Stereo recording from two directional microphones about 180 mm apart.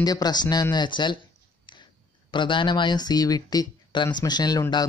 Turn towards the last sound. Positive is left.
turn(degrees=20)  # may be behind; listen again after turning